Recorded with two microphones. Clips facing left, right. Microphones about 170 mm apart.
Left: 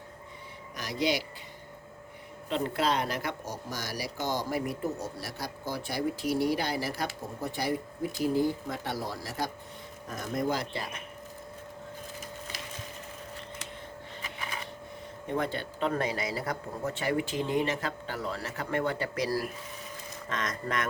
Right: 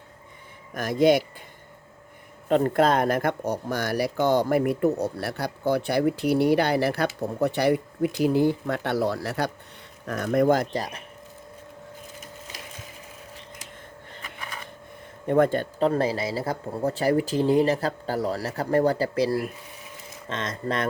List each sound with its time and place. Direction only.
0.7 s speech: 50° right (ahead or behind)
2.5 s speech: 50° right (ahead or behind)
15.3 s speech: 50° right (ahead or behind)
15.9 s speech: 30° right (ahead or behind)